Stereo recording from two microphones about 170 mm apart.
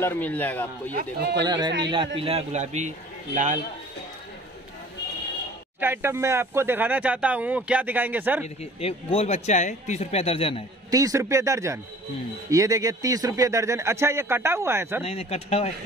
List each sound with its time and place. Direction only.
0.0 s speech: 10° left (ahead or behind)
0.9 s speech: 80° right
1.8 s a man's voice: 25° right (ahead or behind); by 2.9 s 40° right (ahead or behind)
5.8 s speech: 15° right (ahead or behind)
8.7 s speech: 35° left (ahead or behind)
10.9 s a man's voice: 20° right (ahead or behind)
15.0 s speech: 35° left (ahead or behind)